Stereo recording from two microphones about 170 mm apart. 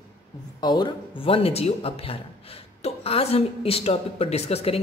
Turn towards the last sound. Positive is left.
turn(degrees=35)  # may be behind; listen again after turning